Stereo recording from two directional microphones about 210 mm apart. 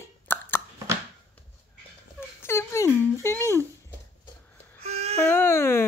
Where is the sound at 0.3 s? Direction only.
10° left (ahead or behind).